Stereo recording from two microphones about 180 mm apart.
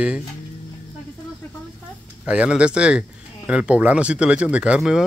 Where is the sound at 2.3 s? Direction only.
5° right (ahead or behind).